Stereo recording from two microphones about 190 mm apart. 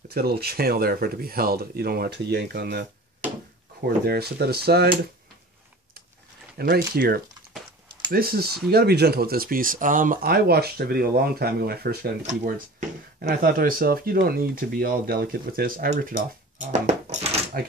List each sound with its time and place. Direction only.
0.1 s speech: 55° right (ahead or behind)
6.6 s speech: 55° right (ahead or behind)
8.1 s speech: 50° right (ahead or behind)
12.2 s speech: 40° right (ahead or behind)